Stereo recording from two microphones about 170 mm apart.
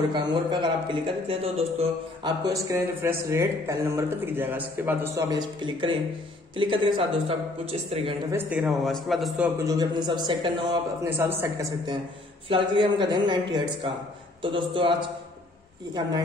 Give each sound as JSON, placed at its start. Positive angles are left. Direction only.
{"t": 0.1, "sound": "a man's voice", "side_deg": -25}
{"t": 2.4, "sound": "speech", "side_deg": -20}
{"t": 8.3, "sound": "speech", "side_deg": -10}
{"t": 9.7, "sound": "a man's voice", "side_deg": -25}
{"t": 11.1, "sound": "a man's voice", "side_deg": -15}